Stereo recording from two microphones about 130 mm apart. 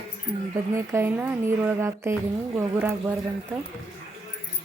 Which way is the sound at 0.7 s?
20° right (ahead or behind).